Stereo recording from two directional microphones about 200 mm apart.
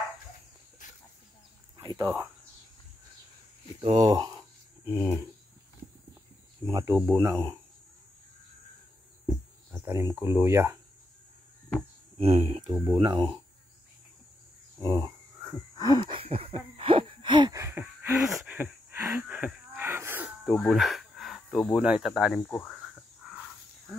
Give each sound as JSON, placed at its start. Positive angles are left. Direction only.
{"t": 1.8, "sound": "speech", "side_deg": -20}
{"t": 3.8, "sound": "speech", "side_deg": -20}
{"t": 6.6, "sound": "speech", "side_deg": -15}
{"t": 9.7, "sound": "speech", "side_deg": -15}
{"t": 12.2, "sound": "speech", "side_deg": -30}
{"t": 14.8, "sound": "a sound", "side_deg": -20}
{"t": 20.5, "sound": "speech", "side_deg": 0}
{"t": 22.7, "sound": "a sound", "side_deg": 0}